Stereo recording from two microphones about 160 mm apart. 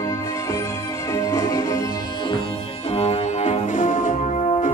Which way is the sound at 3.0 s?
45° left (ahead or behind).